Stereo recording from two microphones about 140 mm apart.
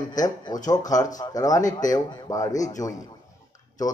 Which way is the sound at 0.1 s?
25° left (ahead or behind).